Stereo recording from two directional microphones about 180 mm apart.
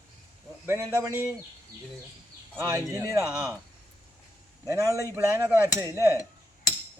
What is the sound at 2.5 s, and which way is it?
Speech, 15° right (ahead or behind).